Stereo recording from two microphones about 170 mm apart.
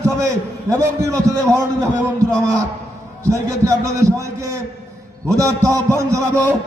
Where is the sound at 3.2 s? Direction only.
15° right (ahead or behind).